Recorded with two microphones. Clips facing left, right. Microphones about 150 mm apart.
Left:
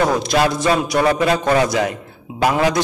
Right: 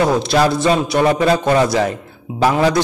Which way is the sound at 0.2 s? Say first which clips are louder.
Right 2 dB; 30° right (ahead or behind).